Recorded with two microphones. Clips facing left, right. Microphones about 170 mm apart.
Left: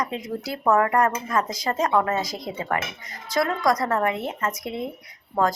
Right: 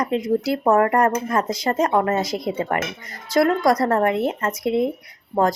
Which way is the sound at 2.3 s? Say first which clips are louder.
Right 7 dB; 55° right (ahead or behind).